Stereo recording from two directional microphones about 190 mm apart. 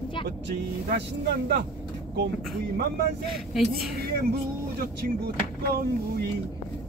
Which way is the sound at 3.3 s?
Centre (ahead or behind).